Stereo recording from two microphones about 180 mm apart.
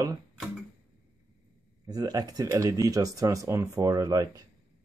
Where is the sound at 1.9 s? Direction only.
20° right (ahead or behind).